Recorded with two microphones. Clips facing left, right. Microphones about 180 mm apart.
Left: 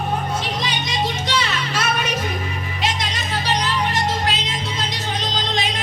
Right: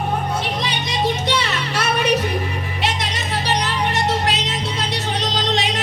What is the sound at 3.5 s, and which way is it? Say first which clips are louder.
Music: even; 65° right (ahead or behind).